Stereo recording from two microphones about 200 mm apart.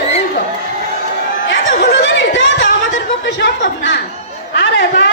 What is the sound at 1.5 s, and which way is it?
Chatter, 65° left (ahead or behind).